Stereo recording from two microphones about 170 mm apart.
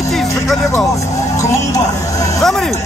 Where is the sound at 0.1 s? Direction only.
Centre (ahead or behind).